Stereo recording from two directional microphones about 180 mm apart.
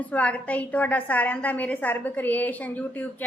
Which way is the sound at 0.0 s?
10° left (ahead or behind).